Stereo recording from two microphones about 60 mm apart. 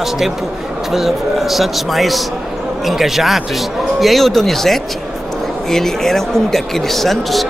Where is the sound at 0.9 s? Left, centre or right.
Centre.